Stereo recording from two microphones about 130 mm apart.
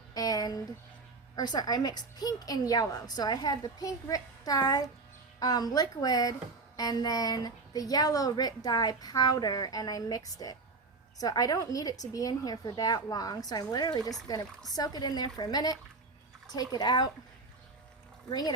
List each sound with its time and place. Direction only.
0.1 s a sound: 30° left (ahead or behind)
1.4 s a woman's voice: 30° left (ahead or behind)
18.3 s a woman's voice: 30° left (ahead or behind)